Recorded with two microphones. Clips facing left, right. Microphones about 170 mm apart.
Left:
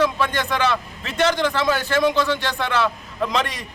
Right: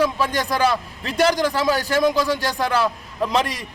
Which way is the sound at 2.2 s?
35° right (ahead or behind).